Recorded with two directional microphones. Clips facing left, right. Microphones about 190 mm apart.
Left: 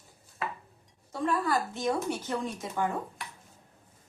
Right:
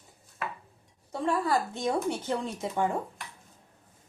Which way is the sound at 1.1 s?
25° right (ahead or behind).